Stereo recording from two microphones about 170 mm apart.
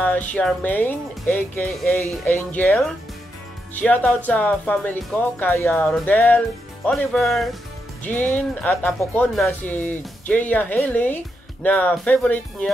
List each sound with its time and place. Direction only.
0.3 s speech: 5° left (ahead or behind)